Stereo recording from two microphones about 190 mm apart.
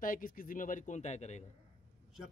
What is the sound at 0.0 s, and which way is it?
A man's voice, 45° left (ahead or behind).